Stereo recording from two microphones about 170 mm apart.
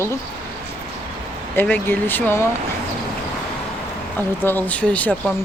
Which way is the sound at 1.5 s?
10° left (ahead or behind).